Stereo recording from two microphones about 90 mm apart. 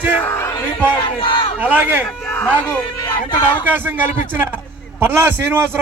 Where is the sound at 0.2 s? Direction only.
25° left (ahead or behind).